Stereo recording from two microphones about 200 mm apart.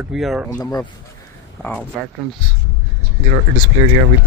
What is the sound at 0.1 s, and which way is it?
Speech, centre (ahead or behind).